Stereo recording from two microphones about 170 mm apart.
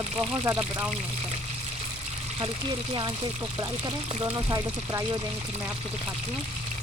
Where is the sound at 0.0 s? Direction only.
35° right (ahead or behind).